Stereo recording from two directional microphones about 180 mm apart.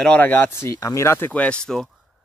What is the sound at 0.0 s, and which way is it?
Speech, 10° left (ahead or behind).